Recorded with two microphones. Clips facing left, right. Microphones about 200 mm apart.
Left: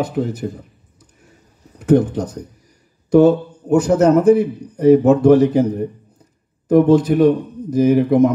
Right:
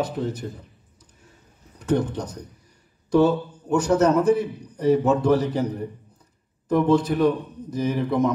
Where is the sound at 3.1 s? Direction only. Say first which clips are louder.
Left 7 dB; 50° left (ahead or behind).